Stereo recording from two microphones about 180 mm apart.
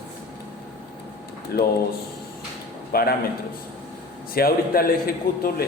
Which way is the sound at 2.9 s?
55° left (ahead or behind).